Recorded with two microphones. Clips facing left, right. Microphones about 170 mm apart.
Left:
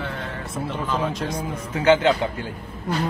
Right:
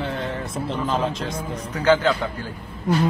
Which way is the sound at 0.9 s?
25° right (ahead or behind).